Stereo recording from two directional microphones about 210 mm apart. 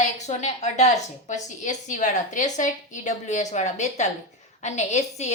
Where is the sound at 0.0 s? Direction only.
35° left (ahead or behind).